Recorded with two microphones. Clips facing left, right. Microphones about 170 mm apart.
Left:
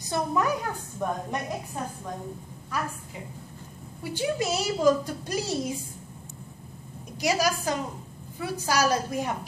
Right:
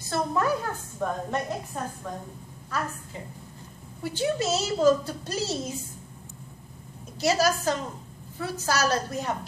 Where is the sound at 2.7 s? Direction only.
10° left (ahead or behind).